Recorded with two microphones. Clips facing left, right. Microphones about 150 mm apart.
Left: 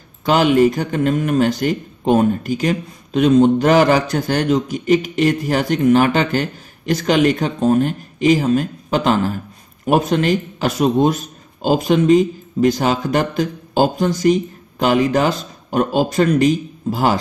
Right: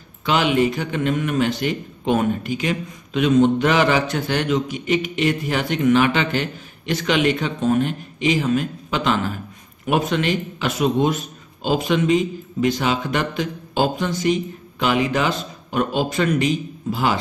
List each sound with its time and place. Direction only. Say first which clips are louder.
0.2 s a man's voice: left 5 dB; 40° left (ahead or behind)